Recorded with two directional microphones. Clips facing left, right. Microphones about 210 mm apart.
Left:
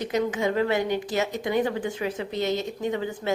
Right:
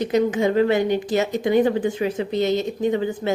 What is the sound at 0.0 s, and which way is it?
Speech, 25° right (ahead or behind).